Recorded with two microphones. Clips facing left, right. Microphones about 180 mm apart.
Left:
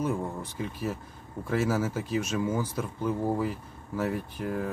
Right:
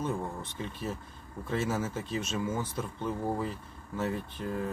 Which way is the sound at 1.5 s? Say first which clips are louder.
Left 4 dB; 25° right (ahead or behind).